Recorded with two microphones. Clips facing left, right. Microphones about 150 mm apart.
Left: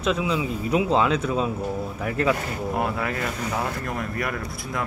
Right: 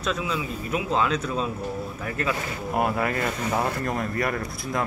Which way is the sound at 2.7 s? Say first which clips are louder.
Right 3 dB; 15° right (ahead or behind).